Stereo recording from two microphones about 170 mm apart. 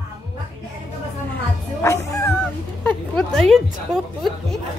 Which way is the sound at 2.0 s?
20° left (ahead or behind).